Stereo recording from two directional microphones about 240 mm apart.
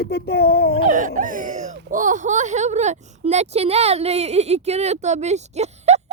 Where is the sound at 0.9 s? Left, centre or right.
Right.